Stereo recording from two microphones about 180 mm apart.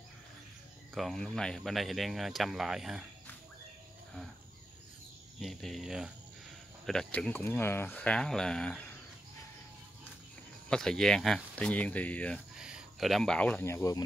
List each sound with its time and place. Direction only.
0.9 s speech: centre (ahead or behind)
5.4 s speech: centre (ahead or behind)
10.7 s speech: 5° left (ahead or behind)
12.5 s speech: 5° right (ahead or behind); by 14.0 s 15° left (ahead or behind)